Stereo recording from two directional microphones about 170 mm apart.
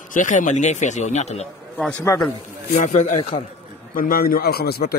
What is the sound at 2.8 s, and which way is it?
Speech, 45° left (ahead or behind).